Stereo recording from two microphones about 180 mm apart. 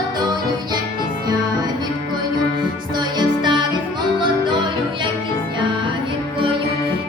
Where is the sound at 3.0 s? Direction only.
25° right (ahead or behind).